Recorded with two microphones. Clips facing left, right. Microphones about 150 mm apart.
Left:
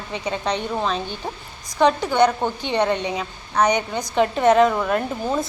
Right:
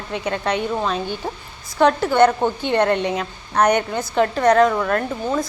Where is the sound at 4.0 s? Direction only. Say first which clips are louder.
Left 3 dB; 20° left (ahead or behind).